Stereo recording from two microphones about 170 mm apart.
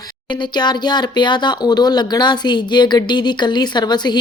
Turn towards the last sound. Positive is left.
turn(degrees=25)  # may be behind; listen again after turning